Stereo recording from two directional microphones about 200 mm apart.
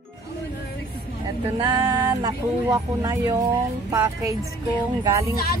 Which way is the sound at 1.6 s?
15° right (ahead or behind).